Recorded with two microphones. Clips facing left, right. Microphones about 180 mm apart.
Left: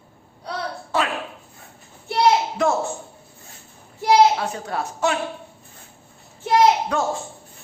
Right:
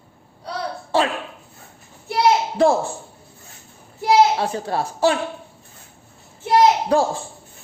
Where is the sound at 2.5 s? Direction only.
30° right (ahead or behind).